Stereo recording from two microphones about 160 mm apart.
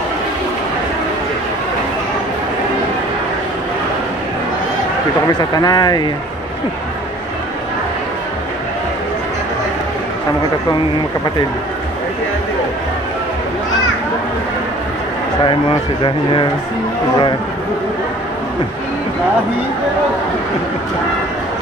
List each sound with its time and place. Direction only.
5.4 s speech: 25° left (ahead or behind)